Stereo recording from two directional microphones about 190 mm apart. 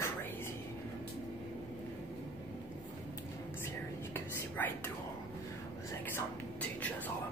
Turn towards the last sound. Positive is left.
turn(degrees=10)  # may be behind; listen again after turning